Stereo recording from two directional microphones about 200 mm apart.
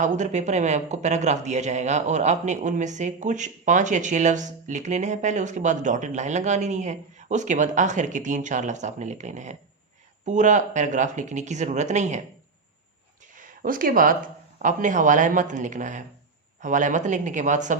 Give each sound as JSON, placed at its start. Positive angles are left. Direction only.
{"t": 0.0, "sound": "a man's voice", "side_deg": -35}
{"t": 13.3, "sound": "a man's voice", "side_deg": -40}